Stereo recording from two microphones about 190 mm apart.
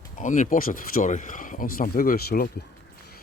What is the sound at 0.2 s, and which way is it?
Speech, 40° left (ahead or behind).